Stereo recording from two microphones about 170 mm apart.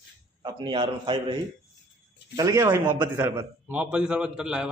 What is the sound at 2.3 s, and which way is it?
A man's voice, 20° right (ahead or behind).